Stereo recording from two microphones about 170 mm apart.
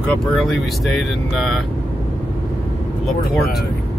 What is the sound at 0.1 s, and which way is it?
Speech, centre (ahead or behind).